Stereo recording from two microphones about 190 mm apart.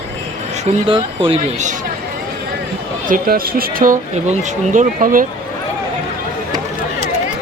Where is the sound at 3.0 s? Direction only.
45° right (ahead or behind).